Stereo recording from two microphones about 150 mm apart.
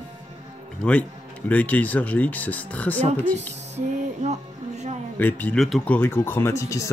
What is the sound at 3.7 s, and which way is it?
Music, 50° right (ahead or behind).